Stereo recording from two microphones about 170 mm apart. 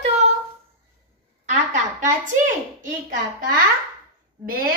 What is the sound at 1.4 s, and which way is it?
A woman's voice, 45° right (ahead or behind).